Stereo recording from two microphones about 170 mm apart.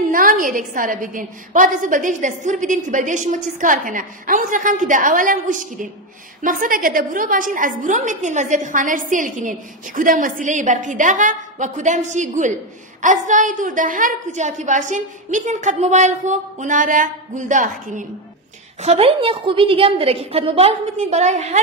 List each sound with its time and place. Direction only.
0.1 s a woman's voice: 55° right (ahead or behind)
18.8 s a woman's voice: 35° right (ahead or behind)